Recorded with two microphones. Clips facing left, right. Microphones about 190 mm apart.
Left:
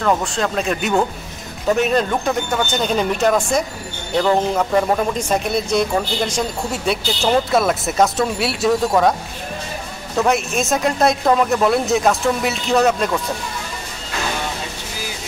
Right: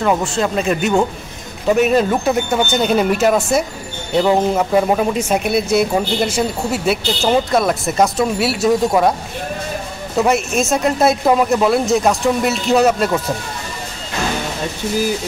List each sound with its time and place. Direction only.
0.0 s speech: 5° right (ahead or behind)
10.1 s speech: centre (ahead or behind)